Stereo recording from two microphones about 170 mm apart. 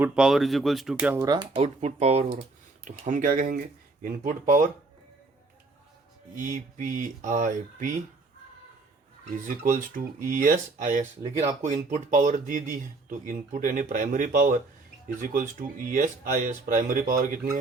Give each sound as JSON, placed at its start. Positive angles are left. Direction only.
{"t": 0.0, "sound": "speech", "side_deg": -5}
{"t": 1.2, "sound": "speech", "side_deg": -25}
{"t": 1.6, "sound": "speech", "side_deg": -40}
{"t": 6.3, "sound": "speech", "side_deg": -50}
{"t": 10.2, "sound": "speech", "side_deg": -55}